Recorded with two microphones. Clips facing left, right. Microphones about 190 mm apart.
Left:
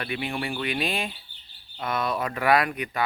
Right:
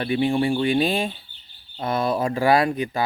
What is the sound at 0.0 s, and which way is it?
Speech, 30° right (ahead or behind).